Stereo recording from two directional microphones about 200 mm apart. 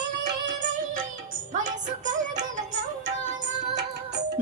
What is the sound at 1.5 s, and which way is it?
Music, 40° right (ahead or behind).